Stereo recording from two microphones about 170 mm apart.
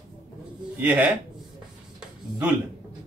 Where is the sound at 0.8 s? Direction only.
10° right (ahead or behind).